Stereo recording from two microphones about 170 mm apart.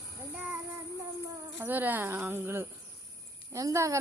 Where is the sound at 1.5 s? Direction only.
10° right (ahead or behind).